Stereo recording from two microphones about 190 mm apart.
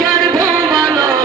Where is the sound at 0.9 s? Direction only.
20° right (ahead or behind).